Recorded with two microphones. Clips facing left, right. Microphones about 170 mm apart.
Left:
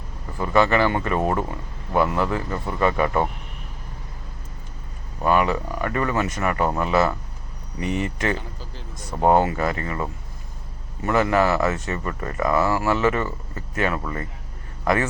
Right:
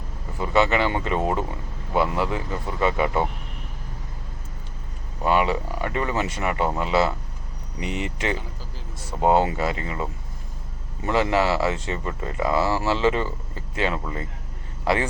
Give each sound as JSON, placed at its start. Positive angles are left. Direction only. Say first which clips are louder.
{"t": 0.3, "sound": "speech", "louder": "left 2 dB", "side_deg": -20}
{"t": 5.2, "sound": "speech", "louder": "left 1 dB", "side_deg": -20}